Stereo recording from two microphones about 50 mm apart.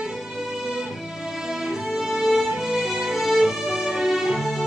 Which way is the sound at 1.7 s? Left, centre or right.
Centre.